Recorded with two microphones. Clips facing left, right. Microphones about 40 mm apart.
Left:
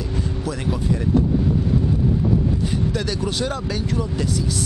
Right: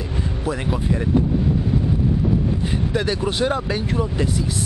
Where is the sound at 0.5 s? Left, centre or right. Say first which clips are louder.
Right 2 dB; right.